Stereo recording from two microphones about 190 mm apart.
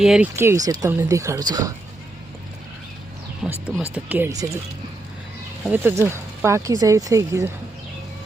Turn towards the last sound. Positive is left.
turn(degrees=-15)  # may be behind; listen again after turning